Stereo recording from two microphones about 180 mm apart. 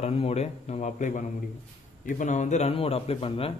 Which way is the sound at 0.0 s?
35° left (ahead or behind).